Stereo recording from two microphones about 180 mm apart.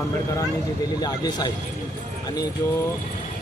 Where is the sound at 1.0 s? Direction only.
20° left (ahead or behind).